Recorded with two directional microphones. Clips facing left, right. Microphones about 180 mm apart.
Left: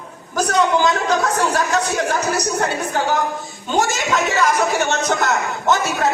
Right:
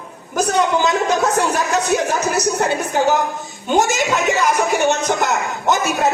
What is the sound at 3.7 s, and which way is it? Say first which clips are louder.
A man's voice: right 2 dB; 15° right (ahead or behind).